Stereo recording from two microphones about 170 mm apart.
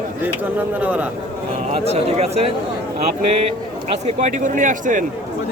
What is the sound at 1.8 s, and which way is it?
Speech, 40° right (ahead or behind).